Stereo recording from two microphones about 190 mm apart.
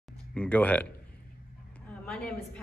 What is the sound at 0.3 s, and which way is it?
Speech, 5° left (ahead or behind).